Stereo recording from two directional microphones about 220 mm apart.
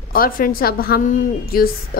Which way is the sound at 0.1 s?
40° left (ahead or behind).